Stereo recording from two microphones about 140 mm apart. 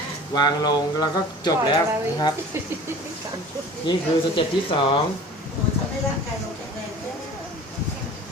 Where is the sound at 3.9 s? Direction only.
35° left (ahead or behind).